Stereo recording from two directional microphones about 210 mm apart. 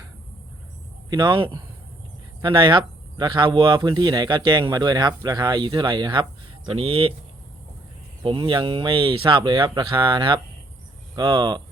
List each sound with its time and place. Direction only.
1.1 s speech: 20° right (ahead or behind)
8.2 s speech: 25° right (ahead or behind)